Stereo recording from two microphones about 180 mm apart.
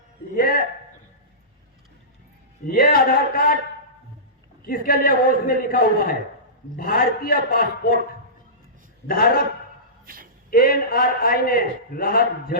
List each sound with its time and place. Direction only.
0.3 s speech: 55° left (ahead or behind)
2.6 s speech: 55° left (ahead or behind)
4.6 s a man's voice: 55° left (ahead or behind)
9.0 s a man's voice: 55° left (ahead or behind)
10.1 s speech: 55° right (ahead or behind)
10.5 s a man's voice: 55° left (ahead or behind)